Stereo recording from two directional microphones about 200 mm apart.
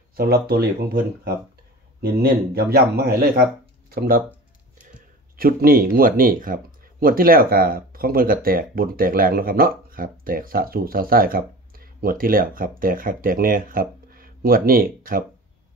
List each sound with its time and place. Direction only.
0.1 s speech: 50° right (ahead or behind)